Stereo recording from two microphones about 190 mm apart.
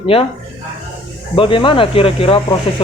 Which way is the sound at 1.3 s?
25° left (ahead or behind).